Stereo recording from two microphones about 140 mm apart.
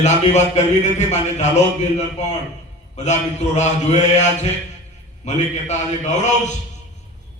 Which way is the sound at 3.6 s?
55° left (ahead or behind).